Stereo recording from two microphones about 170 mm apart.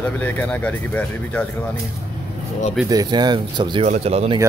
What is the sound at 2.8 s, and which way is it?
Speech, 25° right (ahead or behind).